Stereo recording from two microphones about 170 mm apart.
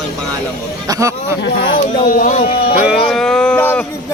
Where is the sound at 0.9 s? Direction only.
20° right (ahead or behind).